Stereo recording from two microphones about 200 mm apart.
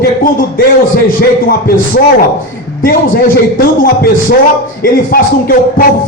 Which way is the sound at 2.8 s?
45° left (ahead or behind).